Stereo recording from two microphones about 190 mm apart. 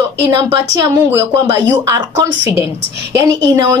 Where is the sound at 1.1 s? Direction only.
15° right (ahead or behind).